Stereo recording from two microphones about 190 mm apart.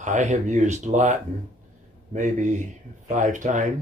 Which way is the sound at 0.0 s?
40° right (ahead or behind).